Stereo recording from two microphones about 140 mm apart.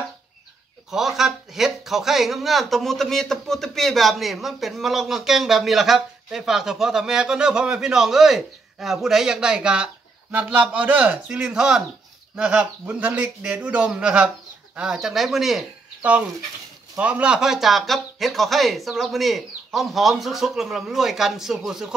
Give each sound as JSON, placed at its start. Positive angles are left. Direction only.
{"t": 0.8, "sound": "a man's voice", "side_deg": 0}